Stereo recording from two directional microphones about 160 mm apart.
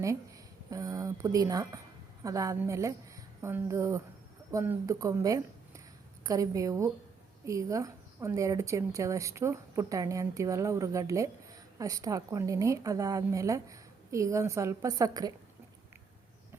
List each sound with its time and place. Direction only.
0.7 s a woman's voice: 20° right (ahead or behind)